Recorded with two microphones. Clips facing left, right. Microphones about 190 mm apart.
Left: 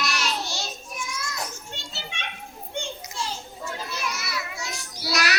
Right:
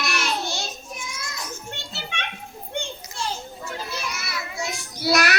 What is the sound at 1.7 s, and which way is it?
Children playing, 60° right (ahead or behind).